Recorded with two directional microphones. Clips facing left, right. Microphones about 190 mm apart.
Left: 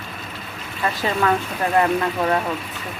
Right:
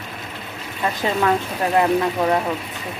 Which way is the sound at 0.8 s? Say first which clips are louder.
Right 1 dB; 20° right (ahead or behind).